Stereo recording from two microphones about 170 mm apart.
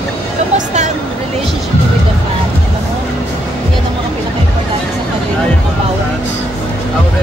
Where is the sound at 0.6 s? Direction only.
45° right (ahead or behind).